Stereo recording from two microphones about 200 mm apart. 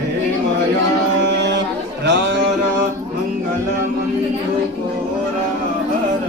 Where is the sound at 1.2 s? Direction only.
60° right (ahead or behind).